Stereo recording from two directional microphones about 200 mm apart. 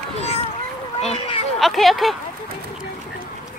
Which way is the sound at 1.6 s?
Centre (ahead or behind).